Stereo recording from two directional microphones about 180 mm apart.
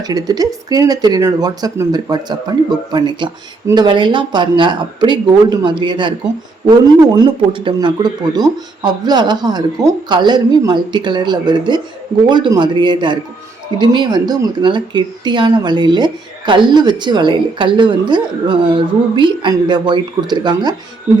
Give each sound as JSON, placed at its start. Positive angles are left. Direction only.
{"t": 0.0, "sound": "a woman's voice", "side_deg": -20}
{"t": 7.5, "sound": "a woman's voice", "side_deg": -25}